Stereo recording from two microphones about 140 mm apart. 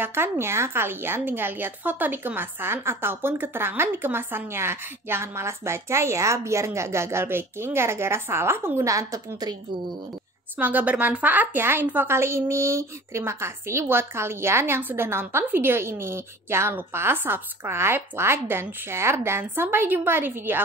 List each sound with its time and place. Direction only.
0.0 s speech: 15° right (ahead or behind)
10.6 s speech: 10° right (ahead or behind)